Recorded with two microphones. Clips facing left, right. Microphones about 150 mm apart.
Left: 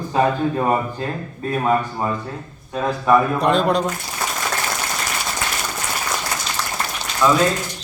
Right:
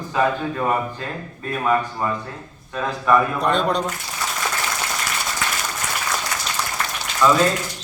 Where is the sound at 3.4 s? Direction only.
Centre (ahead or behind).